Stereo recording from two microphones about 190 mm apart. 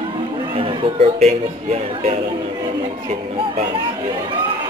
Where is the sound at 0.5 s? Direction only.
30° right (ahead or behind).